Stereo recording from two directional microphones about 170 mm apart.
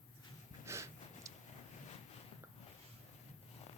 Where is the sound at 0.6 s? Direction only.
15° right (ahead or behind).